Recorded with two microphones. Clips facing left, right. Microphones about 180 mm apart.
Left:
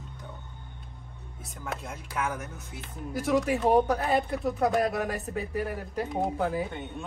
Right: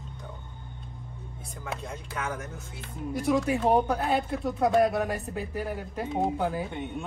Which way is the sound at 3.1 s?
Centre (ahead or behind).